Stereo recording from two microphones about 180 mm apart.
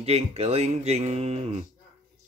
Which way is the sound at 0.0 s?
35° right (ahead or behind).